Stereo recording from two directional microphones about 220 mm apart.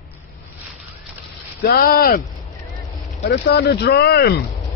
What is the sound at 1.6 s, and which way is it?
Speech, 40° left (ahead or behind).